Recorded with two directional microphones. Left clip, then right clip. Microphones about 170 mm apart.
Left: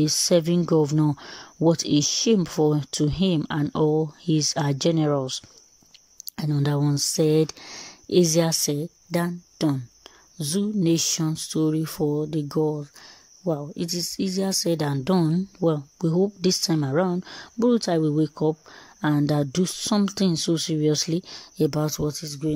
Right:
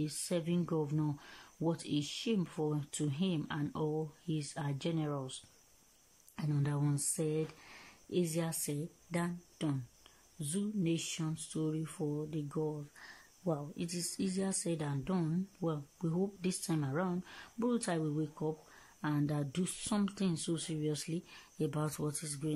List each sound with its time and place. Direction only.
0.0 s speech: 50° left (ahead or behind)
6.5 s speech: 45° left (ahead or behind)
7.2 s speech: 55° left (ahead or behind); by 12.8 s 40° left (ahead or behind)
13.0 s speech: 20° left (ahead or behind)
14.8 s speech: 40° left (ahead or behind)
21.7 s speech: 25° left (ahead or behind)